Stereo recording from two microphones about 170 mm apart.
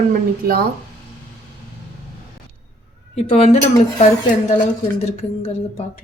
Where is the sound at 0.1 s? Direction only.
60° right (ahead or behind).